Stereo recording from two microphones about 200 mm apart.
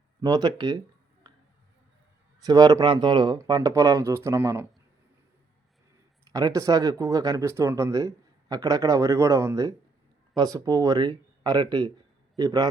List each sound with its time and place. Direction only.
0.2 s speech: 20° right (ahead or behind)
2.4 s speech: 20° right (ahead or behind)
6.3 s speech: 15° right (ahead or behind)